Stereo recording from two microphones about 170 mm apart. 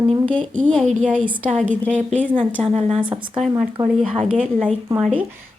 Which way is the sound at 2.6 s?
35° right (ahead or behind).